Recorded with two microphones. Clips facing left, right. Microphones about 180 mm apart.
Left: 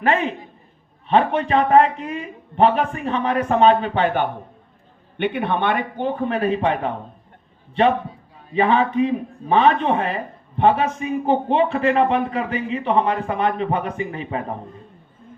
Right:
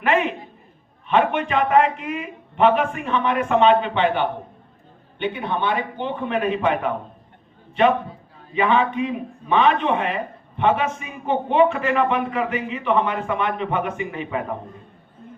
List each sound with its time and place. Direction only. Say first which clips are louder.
0.0 s a man's voice: even; 35° left (ahead or behind)
5.1 s a man's voice: left 3 dB; 60° left (ahead or behind)
6.1 s a man's voice: left 2 dB; 40° left (ahead or behind)